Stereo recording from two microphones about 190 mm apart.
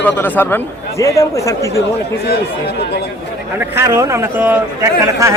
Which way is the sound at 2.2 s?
60° left (ahead or behind).